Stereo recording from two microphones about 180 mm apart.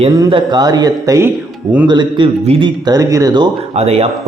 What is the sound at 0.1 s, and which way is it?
A man's voice, 25° right (ahead or behind).